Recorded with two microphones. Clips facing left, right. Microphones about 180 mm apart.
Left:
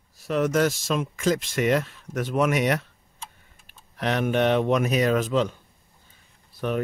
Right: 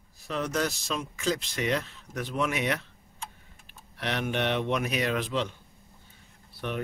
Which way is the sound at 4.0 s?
45° left (ahead or behind).